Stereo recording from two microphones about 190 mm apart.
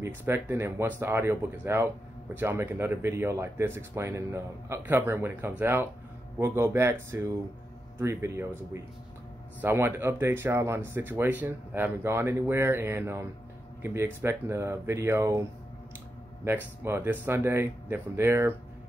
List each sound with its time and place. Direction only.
0.0 s speech: 10° right (ahead or behind)
16.4 s speech: 10° right (ahead or behind)